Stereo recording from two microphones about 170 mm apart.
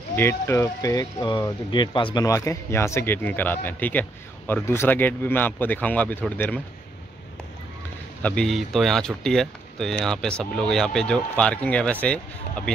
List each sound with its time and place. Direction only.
0.1 s speech: 15° left (ahead or behind)
8.2 s speech: 5° left (ahead or behind)